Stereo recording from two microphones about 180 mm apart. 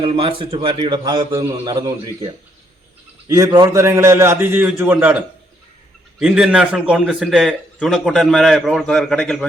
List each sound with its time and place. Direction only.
0.0 s a man's voice: 30° right (ahead or behind)
3.2 s a man's voice: 20° right (ahead or behind); by 9.5 s 5° left (ahead or behind)